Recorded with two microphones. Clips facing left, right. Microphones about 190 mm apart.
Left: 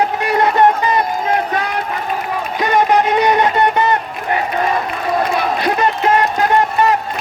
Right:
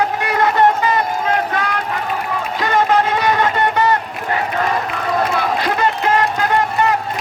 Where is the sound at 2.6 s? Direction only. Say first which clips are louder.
Left 2 dB; 15° left (ahead or behind).